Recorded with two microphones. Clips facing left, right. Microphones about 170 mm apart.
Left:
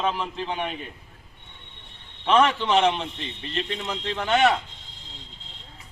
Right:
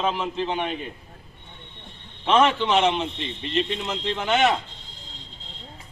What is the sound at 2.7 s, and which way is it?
Speech, 10° right (ahead or behind).